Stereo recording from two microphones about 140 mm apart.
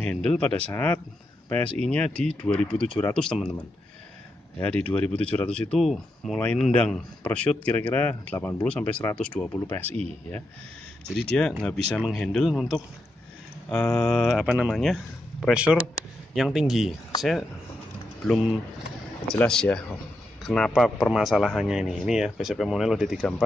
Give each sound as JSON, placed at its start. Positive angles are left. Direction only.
{"t": 0.0, "sound": "a man's voice", "side_deg": 10}
{"t": 4.6, "sound": "a man's voice", "side_deg": 10}
{"t": 11.1, "sound": "a man's voice", "side_deg": 5}
{"t": 19.3, "sound": "a man's voice", "side_deg": 5}